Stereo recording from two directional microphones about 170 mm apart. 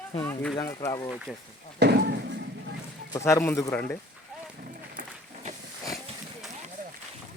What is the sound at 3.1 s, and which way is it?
Speech, 15° left (ahead or behind).